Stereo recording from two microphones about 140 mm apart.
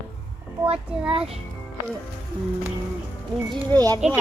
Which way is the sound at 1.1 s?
45° right (ahead or behind).